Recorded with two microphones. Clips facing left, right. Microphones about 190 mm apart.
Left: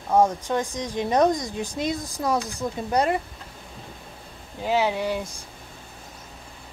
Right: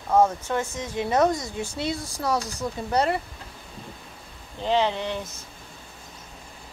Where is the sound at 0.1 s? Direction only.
15° left (ahead or behind).